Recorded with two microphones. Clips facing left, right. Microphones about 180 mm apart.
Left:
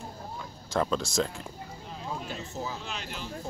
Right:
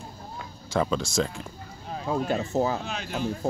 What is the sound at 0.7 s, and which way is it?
Speech, centre (ahead or behind).